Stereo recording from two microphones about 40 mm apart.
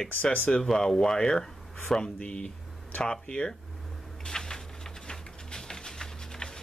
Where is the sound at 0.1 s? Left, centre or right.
Left.